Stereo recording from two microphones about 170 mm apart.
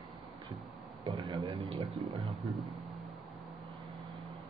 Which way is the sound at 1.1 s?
25° right (ahead or behind).